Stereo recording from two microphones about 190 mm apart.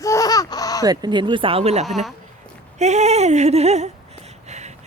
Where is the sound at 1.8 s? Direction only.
Centre (ahead or behind).